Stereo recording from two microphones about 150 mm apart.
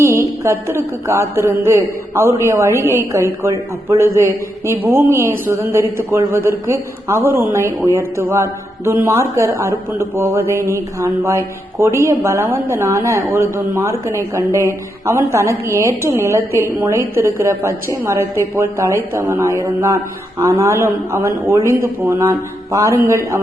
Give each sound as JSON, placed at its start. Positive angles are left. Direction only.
{"t": 0.0, "sound": "a woman's voice", "side_deg": -20}